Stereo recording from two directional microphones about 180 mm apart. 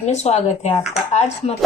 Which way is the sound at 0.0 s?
40° left (ahead or behind).